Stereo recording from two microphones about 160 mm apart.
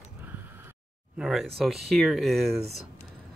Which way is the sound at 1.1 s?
5° right (ahead or behind).